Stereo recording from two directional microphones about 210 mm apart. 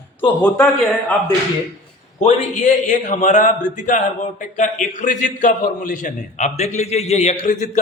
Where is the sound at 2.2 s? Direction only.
30° left (ahead or behind).